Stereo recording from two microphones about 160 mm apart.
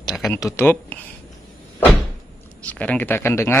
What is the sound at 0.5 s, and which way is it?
Speech, 10° left (ahead or behind).